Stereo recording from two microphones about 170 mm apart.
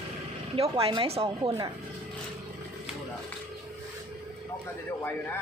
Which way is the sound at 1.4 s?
20° right (ahead or behind).